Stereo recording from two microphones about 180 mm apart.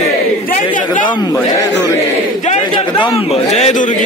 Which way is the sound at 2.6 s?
25° left (ahead or behind).